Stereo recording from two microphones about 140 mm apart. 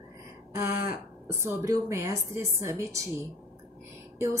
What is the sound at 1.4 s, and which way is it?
A woman's voice, 20° right (ahead or behind).